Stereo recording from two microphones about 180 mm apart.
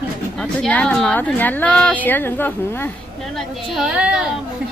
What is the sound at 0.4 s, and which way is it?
Speech, 5° left (ahead or behind).